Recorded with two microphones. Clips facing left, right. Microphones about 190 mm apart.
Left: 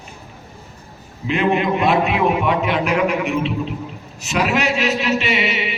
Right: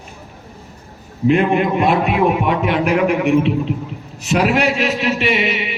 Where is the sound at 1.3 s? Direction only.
50° right (ahead or behind).